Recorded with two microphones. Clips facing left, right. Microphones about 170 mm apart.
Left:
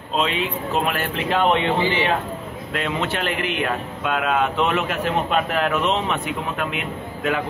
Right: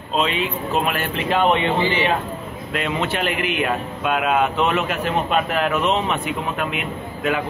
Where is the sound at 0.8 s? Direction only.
Centre (ahead or behind).